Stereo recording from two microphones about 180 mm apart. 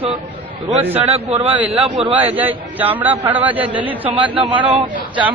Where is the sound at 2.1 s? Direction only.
10° right (ahead or behind).